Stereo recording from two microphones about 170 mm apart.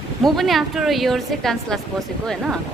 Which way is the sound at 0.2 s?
Centre (ahead or behind).